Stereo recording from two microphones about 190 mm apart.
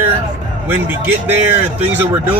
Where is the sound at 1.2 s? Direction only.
10° right (ahead or behind).